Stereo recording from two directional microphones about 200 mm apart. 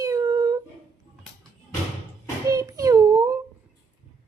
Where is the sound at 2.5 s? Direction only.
15° right (ahead or behind).